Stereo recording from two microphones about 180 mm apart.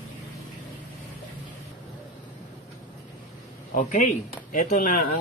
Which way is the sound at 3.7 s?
45° left (ahead or behind).